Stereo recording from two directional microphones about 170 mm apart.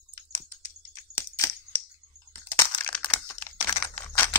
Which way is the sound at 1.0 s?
15° left (ahead or behind).